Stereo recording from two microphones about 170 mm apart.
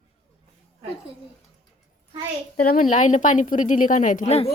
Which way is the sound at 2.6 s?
55° left (ahead or behind).